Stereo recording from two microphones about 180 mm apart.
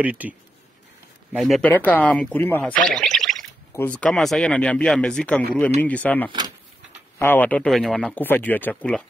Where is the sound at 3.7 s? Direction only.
10° left (ahead or behind).